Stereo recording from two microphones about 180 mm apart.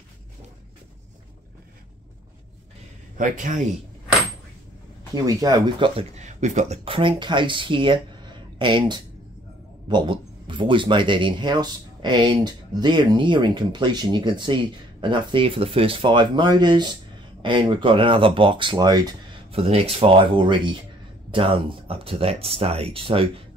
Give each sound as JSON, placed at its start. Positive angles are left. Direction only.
{"t": 3.2, "sound": "speech", "side_deg": -45}
{"t": 5.1, "sound": "speech", "side_deg": -20}
{"t": 5.9, "sound": "speech", "side_deg": -40}
{"t": 19.5, "sound": "speech", "side_deg": -30}